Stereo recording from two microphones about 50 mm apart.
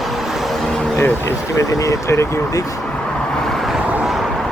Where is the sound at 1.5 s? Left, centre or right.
Left.